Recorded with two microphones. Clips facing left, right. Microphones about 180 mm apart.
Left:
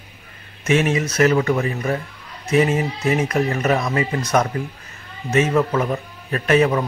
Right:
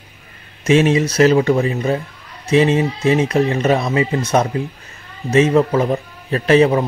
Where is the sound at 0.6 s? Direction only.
30° right (ahead or behind).